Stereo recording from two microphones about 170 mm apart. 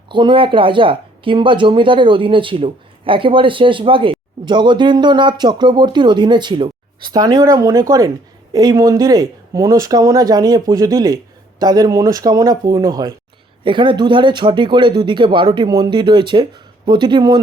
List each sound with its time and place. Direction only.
0.1 s speech: 30° right (ahead or behind)